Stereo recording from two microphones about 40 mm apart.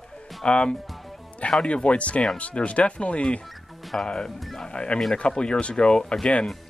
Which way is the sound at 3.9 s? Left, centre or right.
Centre.